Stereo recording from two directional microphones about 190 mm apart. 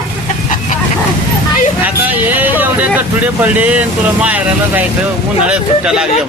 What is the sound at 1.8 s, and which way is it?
A man's voice, 10° right (ahead or behind).